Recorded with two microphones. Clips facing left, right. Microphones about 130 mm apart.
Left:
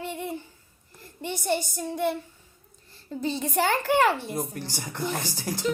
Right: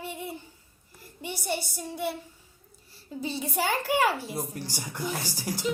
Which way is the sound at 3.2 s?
5° right (ahead or behind).